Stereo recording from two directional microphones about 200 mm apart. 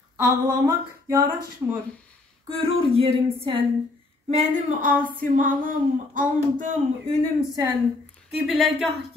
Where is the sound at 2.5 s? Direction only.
30° right (ahead or behind).